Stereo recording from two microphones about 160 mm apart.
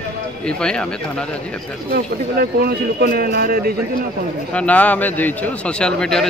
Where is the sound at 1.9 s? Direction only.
70° right (ahead or behind).